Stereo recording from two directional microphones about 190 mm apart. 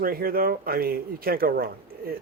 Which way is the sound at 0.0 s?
50° right (ahead or behind).